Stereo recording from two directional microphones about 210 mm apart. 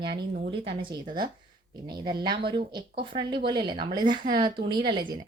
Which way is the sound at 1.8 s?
20° right (ahead or behind).